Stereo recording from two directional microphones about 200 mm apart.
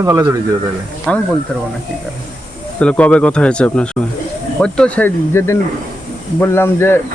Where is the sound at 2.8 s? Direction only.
5° left (ahead or behind).